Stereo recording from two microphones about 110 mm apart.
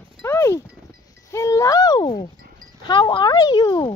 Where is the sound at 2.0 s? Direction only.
50° left (ahead or behind).